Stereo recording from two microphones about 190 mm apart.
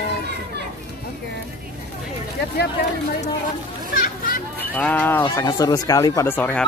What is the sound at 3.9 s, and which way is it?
Children playing, 50° left (ahead or behind).